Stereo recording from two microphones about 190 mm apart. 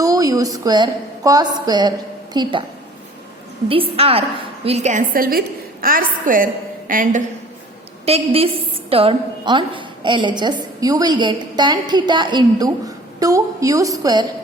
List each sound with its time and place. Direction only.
0.0 s a woman's voice: 20° right (ahead or behind)
3.7 s a woman's voice: 30° right (ahead or behind); by 7.2 s 45° right (ahead or behind)
8.0 s a woman's voice: 30° right (ahead or behind)